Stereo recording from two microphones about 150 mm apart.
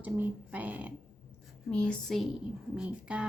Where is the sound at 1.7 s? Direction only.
5° left (ahead or behind).